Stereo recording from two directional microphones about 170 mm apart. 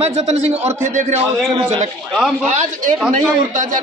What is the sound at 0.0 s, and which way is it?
A man's voice, 40° right (ahead or behind).